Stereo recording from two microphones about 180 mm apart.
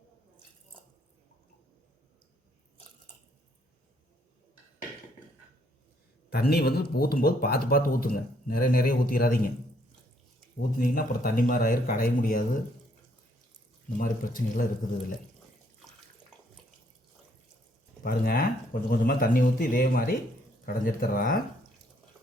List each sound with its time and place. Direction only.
6.3 s speech: 60° left (ahead or behind)
10.6 s speech: 50° left (ahead or behind)
14.0 s speech: 50° left (ahead or behind)
18.0 s speech: 55° left (ahead or behind)